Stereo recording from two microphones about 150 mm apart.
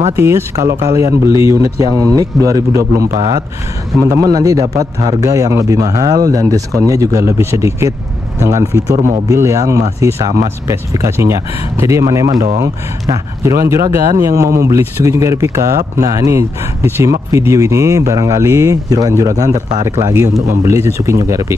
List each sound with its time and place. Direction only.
0.1 s speech: 15° right (ahead or behind)